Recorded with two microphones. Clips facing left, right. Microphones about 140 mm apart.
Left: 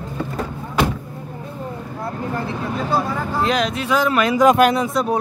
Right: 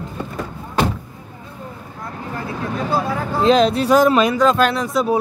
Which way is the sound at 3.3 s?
25° right (ahead or behind).